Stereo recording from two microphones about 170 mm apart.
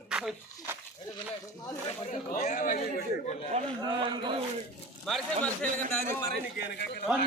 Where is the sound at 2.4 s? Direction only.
50° left (ahead or behind).